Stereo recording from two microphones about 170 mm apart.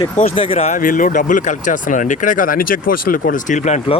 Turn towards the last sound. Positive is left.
turn(degrees=45)  # may be behind; listen again after turning